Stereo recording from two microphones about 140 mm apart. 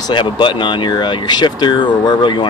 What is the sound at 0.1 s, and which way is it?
Speech, 35° left (ahead or behind).